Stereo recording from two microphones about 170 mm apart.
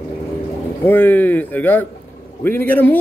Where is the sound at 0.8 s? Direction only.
10° left (ahead or behind).